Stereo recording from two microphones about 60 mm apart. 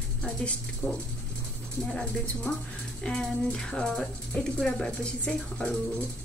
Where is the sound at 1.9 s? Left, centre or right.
Centre.